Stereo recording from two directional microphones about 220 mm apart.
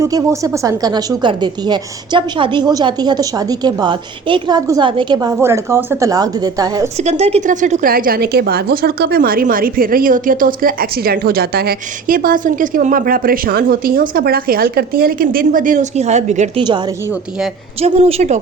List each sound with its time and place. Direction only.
0.0 s a woman's voice: 15° right (ahead or behind)
7.0 s a woman's voice: 30° right (ahead or behind)
17.7 s speech: 25° right (ahead or behind)